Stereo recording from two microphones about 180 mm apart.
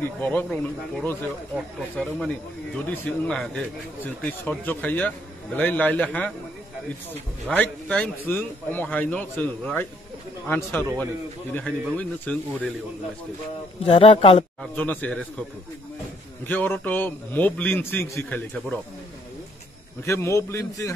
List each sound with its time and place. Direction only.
0.2 s speech: 10° left (ahead or behind)
7.4 s speech: 5° left (ahead or behind)
13.8 s speech: 30° left (ahead or behind)
14.6 s speech: 10° left (ahead or behind)
16.4 s speech: 10° left (ahead or behind)
20.1 s speech: 15° left (ahead or behind)